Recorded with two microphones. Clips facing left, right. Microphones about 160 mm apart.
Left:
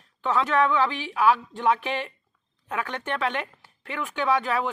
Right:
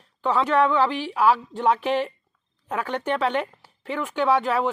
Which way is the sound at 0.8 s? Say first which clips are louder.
Right 3 dB; 30° right (ahead or behind).